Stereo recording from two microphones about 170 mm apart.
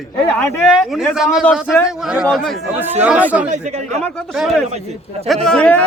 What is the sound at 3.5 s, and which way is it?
Speech, 40° right (ahead or behind).